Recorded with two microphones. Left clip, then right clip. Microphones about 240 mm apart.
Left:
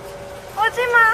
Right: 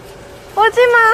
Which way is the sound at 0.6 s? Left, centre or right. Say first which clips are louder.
Right 5 dB; right.